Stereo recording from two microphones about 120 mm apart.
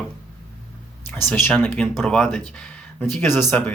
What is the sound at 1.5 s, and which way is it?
Speech, 10° left (ahead or behind).